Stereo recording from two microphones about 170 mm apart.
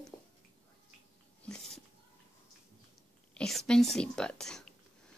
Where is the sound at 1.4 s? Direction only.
5° left (ahead or behind).